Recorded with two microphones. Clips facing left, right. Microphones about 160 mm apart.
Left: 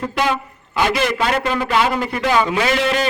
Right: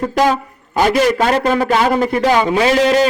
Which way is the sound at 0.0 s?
40° right (ahead or behind).